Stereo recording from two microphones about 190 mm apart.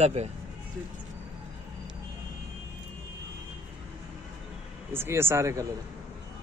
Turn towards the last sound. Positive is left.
turn(degrees=-15)  # may be behind; listen again after turning